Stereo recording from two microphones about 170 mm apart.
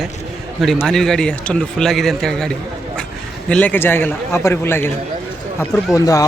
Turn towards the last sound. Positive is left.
turn(degrees=20)  # may be behind; listen again after turning